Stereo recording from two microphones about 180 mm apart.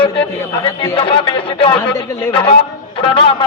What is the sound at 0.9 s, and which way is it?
A man's voice, 30° left (ahead or behind).